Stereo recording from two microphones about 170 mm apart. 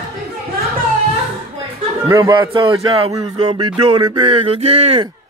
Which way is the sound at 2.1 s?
25° right (ahead or behind).